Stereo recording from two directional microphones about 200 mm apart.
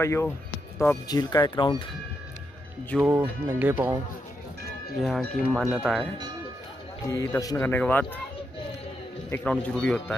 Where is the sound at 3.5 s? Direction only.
10° right (ahead or behind).